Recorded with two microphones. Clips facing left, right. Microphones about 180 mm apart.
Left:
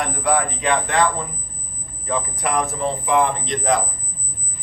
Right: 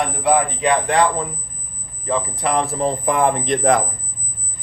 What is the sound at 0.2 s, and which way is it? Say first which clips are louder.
Speech: right 4 dB; 20° right (ahead or behind).